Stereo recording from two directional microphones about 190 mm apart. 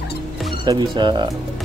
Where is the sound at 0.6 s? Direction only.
25° right (ahead or behind).